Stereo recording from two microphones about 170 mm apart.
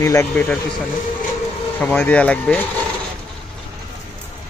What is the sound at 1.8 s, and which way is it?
Speech, 10° left (ahead or behind).